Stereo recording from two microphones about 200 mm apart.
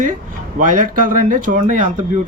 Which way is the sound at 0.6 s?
40° right (ahead or behind).